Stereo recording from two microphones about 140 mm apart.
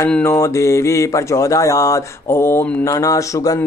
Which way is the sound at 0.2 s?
20° left (ahead or behind).